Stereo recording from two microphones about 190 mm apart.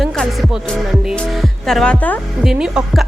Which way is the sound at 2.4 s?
5° right (ahead or behind).